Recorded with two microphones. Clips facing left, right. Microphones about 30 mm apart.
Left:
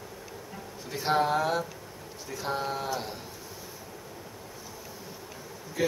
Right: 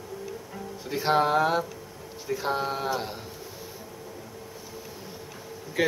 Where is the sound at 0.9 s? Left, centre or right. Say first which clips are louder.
Right 3 dB; centre.